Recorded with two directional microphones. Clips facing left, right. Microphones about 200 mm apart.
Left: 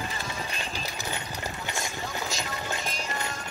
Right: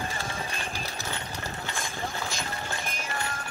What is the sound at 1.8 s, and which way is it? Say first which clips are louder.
Run: even; 55° right (ahead or behind).